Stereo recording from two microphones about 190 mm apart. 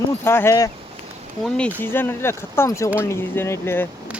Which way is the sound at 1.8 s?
10° left (ahead or behind).